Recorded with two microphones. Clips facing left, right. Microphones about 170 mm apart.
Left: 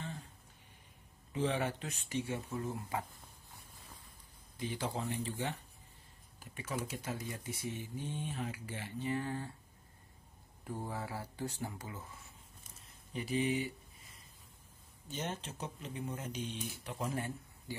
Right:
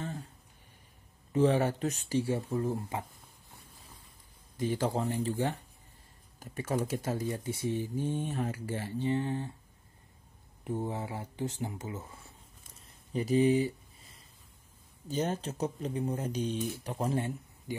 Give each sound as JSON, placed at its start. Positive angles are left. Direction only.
{"t": 1.3, "sound": "speech", "side_deg": -40}
{"t": 4.6, "sound": "speech", "side_deg": -45}
{"t": 10.6, "sound": "speech", "side_deg": -20}
{"t": 13.1, "sound": "speech", "side_deg": -40}
{"t": 15.0, "sound": "speech", "side_deg": -40}
{"t": 17.7, "sound": "speech", "side_deg": -20}